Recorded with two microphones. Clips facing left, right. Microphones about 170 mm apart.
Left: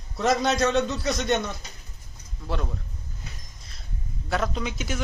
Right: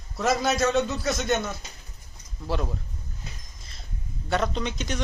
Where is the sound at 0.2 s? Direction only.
Centre (ahead or behind).